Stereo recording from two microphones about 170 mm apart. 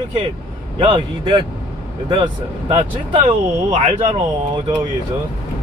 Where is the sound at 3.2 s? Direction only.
45° right (ahead or behind).